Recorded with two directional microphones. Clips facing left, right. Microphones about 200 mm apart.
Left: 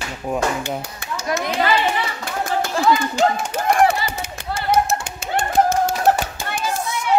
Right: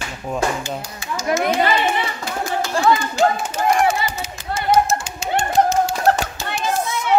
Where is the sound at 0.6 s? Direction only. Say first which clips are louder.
Left 1 dB; 60° left (ahead or behind).